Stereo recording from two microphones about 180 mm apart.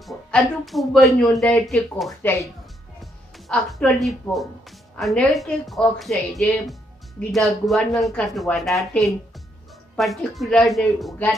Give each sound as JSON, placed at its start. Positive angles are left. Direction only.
{"t": 0.0, "sound": "speech", "side_deg": 0}
{"t": 2.2, "sound": "speech", "side_deg": 15}
{"t": 3.0, "sound": "speech", "side_deg": 0}